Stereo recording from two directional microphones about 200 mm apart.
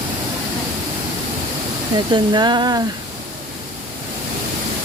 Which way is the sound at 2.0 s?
25° right (ahead or behind).